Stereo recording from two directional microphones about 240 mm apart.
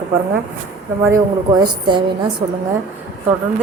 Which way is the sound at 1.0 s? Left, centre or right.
Centre.